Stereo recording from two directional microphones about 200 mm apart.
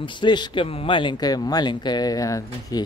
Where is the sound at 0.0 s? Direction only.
25° left (ahead or behind).